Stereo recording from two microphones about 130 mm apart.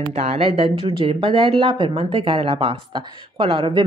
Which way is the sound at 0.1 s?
55° right (ahead or behind).